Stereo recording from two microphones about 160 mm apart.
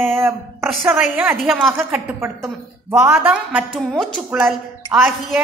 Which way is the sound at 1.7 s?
10° right (ahead or behind).